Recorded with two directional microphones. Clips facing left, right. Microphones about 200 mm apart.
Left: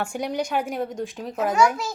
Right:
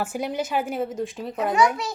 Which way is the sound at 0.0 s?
5° right (ahead or behind).